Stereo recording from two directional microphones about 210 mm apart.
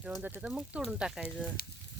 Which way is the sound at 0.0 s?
5° right (ahead or behind).